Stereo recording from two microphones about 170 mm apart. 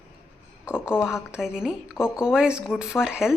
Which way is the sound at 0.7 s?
5° right (ahead or behind).